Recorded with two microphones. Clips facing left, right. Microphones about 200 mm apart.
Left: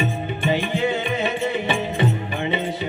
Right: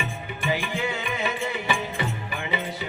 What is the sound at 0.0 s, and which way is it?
Music, 25° left (ahead or behind).